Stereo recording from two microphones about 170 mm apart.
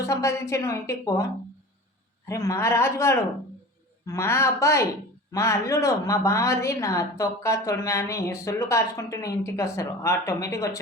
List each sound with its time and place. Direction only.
0.0 s a woman's voice: 15° left (ahead or behind)
2.2 s a woman's voice: 20° left (ahead or behind)